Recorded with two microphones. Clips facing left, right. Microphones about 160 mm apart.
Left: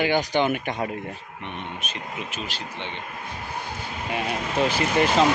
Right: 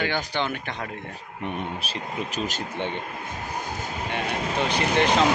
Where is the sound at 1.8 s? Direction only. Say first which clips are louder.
Right 3 dB; 35° right (ahead or behind).